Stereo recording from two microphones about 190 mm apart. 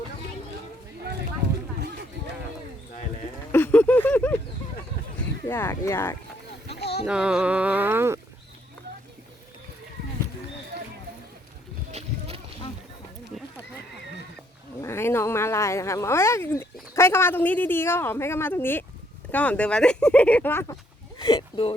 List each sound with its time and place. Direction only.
3.5 s a sound: 10° left (ahead or behind)
5.5 s speech: 10° left (ahead or behind)
6.7 s a sound: 60° left (ahead or behind)
7.0 s speech: 5° right (ahead or behind)
11.9 s rowboat: 35° right (ahead or behind)
13.3 s neigh: centre (ahead or behind)
14.8 s speech: 15° left (ahead or behind)
21.2 s speech: 25° left (ahead or behind)